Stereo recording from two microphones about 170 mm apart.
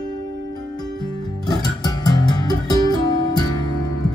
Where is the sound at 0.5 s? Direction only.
25° left (ahead or behind).